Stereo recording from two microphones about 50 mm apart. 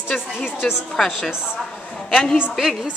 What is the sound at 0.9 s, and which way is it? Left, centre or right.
Speech, centre.